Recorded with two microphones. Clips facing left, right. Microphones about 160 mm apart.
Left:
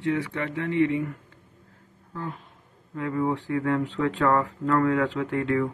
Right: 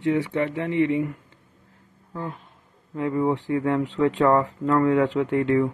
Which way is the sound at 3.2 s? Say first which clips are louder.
Right 2 dB; 20° right (ahead or behind).